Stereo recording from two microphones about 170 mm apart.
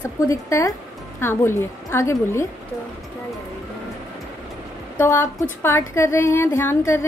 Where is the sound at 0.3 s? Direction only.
15° left (ahead or behind).